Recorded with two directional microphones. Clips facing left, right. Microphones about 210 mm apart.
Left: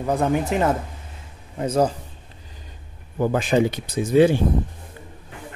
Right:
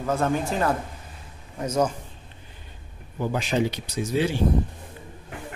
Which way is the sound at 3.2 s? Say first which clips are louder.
Left 5 dB; 50° left (ahead or behind).